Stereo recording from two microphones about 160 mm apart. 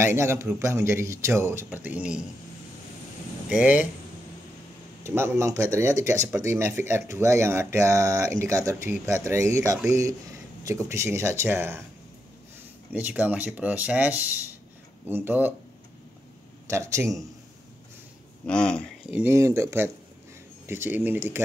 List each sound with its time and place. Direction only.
0.0 s speech: 15° right (ahead or behind)
3.4 s speech: 10° right (ahead or behind)
5.0 s a man's voice: 15° right (ahead or behind)
12.9 s speech: 10° right (ahead or behind)
16.6 s a man's voice: 20° right (ahead or behind)
18.4 s speech: 5° left (ahead or behind)
19.0 s speech: 5° right (ahead or behind)
19.3 s speech: 15° right (ahead or behind)